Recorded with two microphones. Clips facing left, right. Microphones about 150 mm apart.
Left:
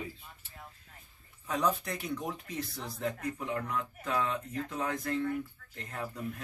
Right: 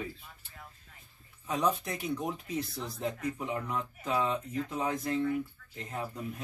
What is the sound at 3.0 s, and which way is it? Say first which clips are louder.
Speech: even; 25° right (ahead or behind).